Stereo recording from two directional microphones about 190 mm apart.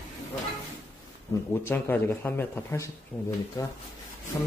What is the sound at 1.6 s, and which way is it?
Speech, 10° left (ahead or behind).